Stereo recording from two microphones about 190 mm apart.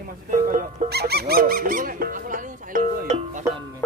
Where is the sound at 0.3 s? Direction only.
45° right (ahead or behind).